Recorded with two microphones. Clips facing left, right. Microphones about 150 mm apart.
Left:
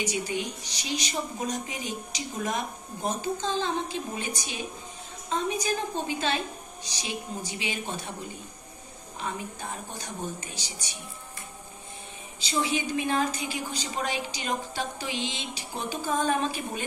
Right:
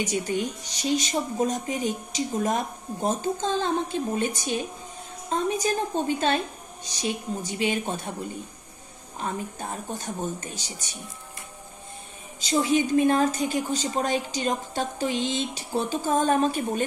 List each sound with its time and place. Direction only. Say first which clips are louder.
0.0 s a woman's voice: right 4 dB; 45° right (ahead or behind)
9.2 s a woman's voice: right 3 dB; 45° right (ahead or behind)
12.4 s a woman's voice: right 6 dB; 45° right (ahead or behind)
14.8 s a sound: right 6 dB; 40° right (ahead or behind)